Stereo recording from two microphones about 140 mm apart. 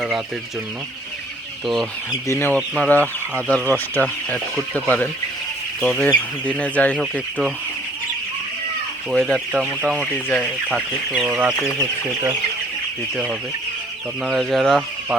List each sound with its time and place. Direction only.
1.6 s speech: centre (ahead or behind)
2.2 s speech: 15° left (ahead or behind)
3.3 s speech: 5° right (ahead or behind)
3.9 s speech: 10° left (ahead or behind)
7.0 s speech: 5° right (ahead or behind)
9.0 s speech: 5° left (ahead or behind)
11.3 s speech: 10° right (ahead or behind)
14.3 s speech: centre (ahead or behind)